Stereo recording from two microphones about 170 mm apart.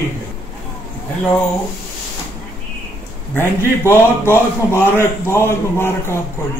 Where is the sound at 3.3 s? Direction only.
15° left (ahead or behind).